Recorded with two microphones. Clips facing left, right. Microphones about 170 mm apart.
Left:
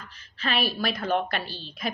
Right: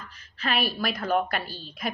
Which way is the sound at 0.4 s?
30° left (ahead or behind).